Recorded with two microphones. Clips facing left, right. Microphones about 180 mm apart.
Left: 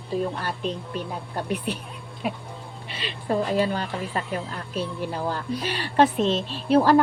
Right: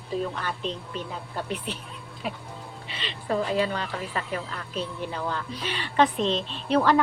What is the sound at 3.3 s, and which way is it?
Speech, 30° left (ahead or behind).